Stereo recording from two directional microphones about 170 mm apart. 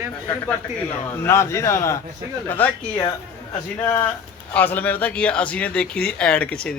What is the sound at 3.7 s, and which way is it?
Speech, 15° left (ahead or behind).